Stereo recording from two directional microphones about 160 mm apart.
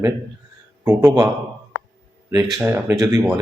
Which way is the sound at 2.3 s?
20° right (ahead or behind).